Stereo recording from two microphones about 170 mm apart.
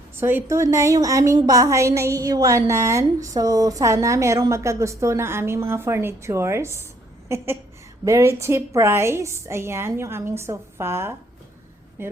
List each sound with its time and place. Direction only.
0.2 s a woman's voice: 15° right (ahead or behind)